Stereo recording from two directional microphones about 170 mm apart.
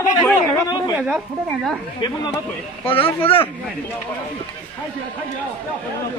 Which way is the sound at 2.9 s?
35° left (ahead or behind).